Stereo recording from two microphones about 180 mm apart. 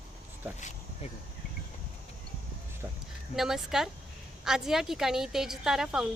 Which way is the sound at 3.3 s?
Centre (ahead or behind).